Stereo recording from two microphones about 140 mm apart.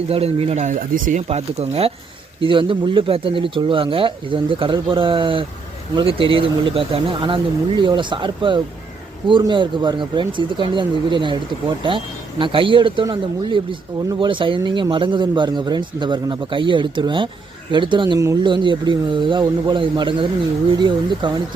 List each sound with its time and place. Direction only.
0.1 s speech: 45° right (ahead or behind); by 1.2 s 70° right (ahead or behind)
1.3 s speech: 50° right (ahead or behind)